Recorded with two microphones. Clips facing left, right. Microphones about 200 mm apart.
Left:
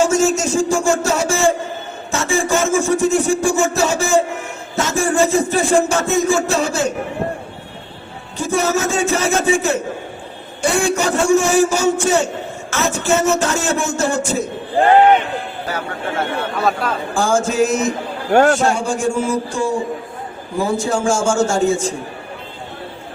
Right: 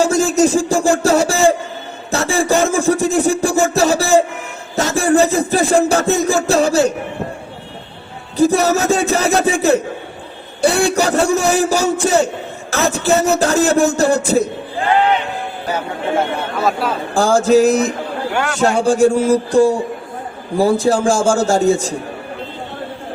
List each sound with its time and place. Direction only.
0.0 s a man's voice: 35° right (ahead or behind)
2.0 s music: 35° right (ahead or behind)
8.4 s music: 35° right (ahead or behind)
16.6 s speech: centre (ahead or behind)
17.2 s music: 35° right (ahead or behind)
18.3 s a man's voice: 45° left (ahead or behind)
18.6 s music: 35° right (ahead or behind)